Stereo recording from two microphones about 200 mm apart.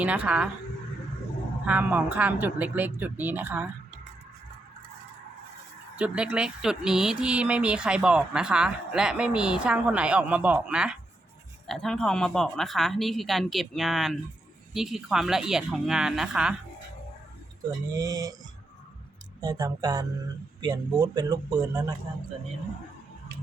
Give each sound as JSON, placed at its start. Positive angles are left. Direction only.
{"t": 0.0, "sound": "speech", "side_deg": -5}
{"t": 1.6, "sound": "speech", "side_deg": -10}
{"t": 6.0, "sound": "speech", "side_deg": -5}
{"t": 17.9, "sound": "speech", "side_deg": -15}
{"t": 19.4, "sound": "speech", "side_deg": -20}